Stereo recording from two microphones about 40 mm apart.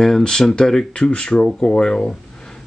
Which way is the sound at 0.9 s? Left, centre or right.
Left.